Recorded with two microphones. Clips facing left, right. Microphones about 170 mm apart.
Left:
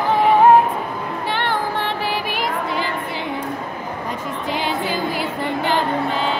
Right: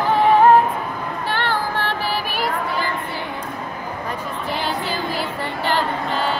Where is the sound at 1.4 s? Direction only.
20° left (ahead or behind).